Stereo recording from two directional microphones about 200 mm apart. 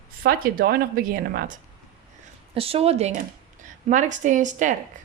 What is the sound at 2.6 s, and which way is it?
A woman's voice, 30° right (ahead or behind).